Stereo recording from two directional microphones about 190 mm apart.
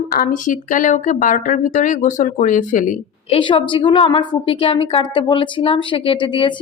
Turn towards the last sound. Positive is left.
turn(degrees=25)  # may be behind; listen again after turning